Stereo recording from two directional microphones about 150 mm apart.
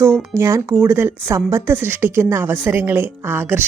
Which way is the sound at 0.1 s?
Centre (ahead or behind).